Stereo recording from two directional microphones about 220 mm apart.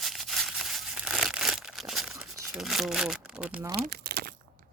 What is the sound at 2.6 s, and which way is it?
Speech, centre (ahead or behind).